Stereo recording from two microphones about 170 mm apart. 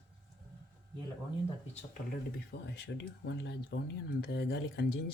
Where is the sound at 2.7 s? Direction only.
90° left.